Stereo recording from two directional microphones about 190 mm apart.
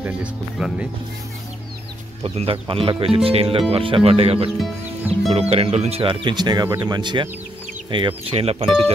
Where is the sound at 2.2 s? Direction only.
30° right (ahead or behind).